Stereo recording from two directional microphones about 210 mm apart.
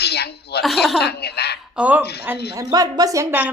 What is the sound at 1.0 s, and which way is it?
Speech, 50° left (ahead or behind).